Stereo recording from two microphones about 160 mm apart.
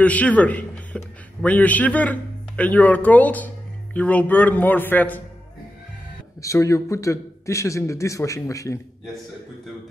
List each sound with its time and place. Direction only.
0.0 s a man's voice: 10° left (ahead or behind)
6.4 s a man's voice: 20° left (ahead or behind)